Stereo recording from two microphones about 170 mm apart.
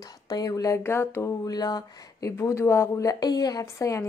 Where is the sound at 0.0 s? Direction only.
20° left (ahead or behind).